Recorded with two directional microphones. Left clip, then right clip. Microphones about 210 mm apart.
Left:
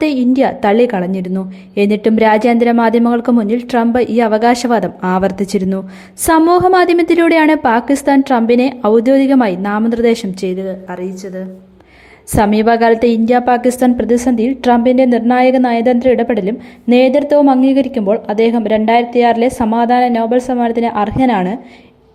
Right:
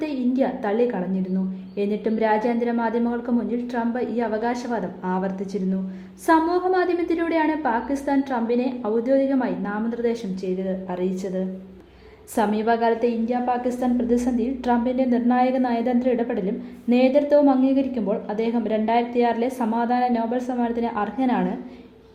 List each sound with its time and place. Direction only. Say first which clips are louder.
0.0 s a woman's voice: left 11 dB; 40° left (ahead or behind)
12.3 s a woman's voice: left 10 dB; 40° left (ahead or behind)